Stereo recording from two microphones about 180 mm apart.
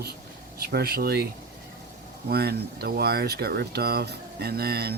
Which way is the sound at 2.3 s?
60° right (ahead or behind).